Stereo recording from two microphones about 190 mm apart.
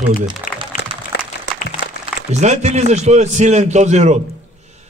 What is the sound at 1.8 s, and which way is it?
Music, 60° left (ahead or behind).